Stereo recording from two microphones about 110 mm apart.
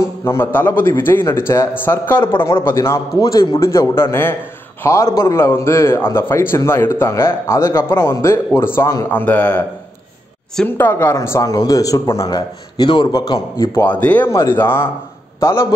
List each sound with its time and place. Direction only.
0.0 s a man's voice: 20° left (ahead or behind)
10.8 s speech: 20° left (ahead or behind)
13.8 s a man's voice: 15° left (ahead or behind)